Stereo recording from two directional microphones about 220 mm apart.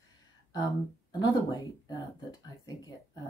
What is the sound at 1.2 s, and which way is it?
Speech, 15° left (ahead or behind).